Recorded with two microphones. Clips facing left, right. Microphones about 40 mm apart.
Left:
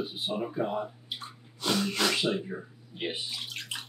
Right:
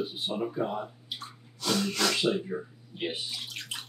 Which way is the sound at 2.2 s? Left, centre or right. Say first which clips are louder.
Right 2 dB; centre.